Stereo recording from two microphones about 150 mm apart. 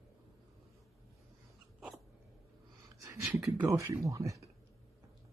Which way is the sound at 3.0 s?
20° right (ahead or behind).